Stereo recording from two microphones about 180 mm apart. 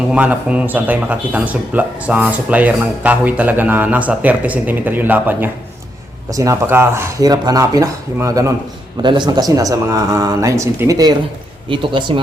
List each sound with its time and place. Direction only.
0.1 s speech: 5° right (ahead or behind); by 12.2 s 25° right (ahead or behind)